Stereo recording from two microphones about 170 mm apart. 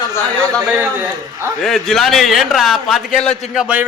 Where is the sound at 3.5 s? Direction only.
5° right (ahead or behind).